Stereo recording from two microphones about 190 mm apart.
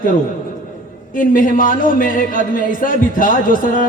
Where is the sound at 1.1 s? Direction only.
45° left (ahead or behind).